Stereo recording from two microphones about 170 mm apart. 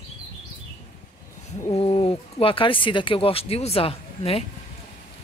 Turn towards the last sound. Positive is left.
turn(degrees=35)  # may be behind; listen again after turning